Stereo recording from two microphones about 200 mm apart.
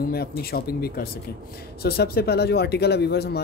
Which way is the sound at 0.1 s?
50° left (ahead or behind).